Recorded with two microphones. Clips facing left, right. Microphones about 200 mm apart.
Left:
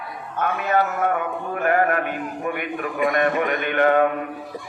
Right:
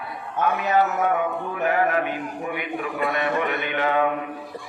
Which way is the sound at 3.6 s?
55° left (ahead or behind).